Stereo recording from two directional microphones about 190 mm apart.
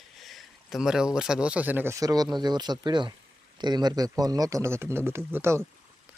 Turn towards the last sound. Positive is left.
turn(degrees=-15)  # may be behind; listen again after turning